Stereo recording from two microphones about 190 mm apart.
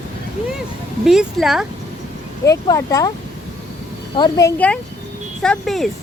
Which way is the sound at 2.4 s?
15° left (ahead or behind).